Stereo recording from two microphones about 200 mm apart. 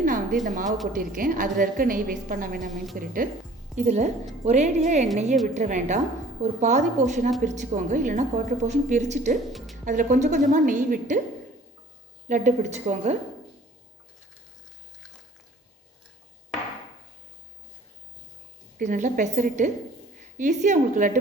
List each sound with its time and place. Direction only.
0.0 s a sound: 45° right (ahead or behind)
0.4 s a woman's voice: 40° right (ahead or behind)
9.5 s speech: centre (ahead or behind)
9.8 s a woman's voice: 40° right (ahead or behind)
12.3 s a woman's voice: 35° right (ahead or behind)
18.8 s a woman's voice: 40° right (ahead or behind)